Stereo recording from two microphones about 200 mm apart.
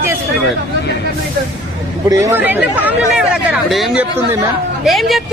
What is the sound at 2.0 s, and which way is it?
Speech, 15° right (ahead or behind).